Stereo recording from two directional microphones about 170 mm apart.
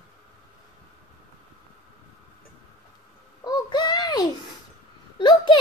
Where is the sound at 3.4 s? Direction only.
25° left (ahead or behind).